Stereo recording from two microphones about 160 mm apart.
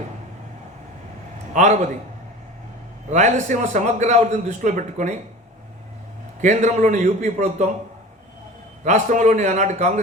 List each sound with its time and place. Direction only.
1.5 s a man's voice: 50° right (ahead or behind)
3.1 s a man's voice: 50° right (ahead or behind)
6.4 s a man's voice: 50° right (ahead or behind)
8.8 s a man's voice: 50° right (ahead or behind)